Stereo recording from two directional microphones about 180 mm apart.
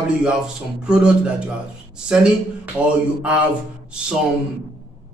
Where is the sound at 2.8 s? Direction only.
5° right (ahead or behind).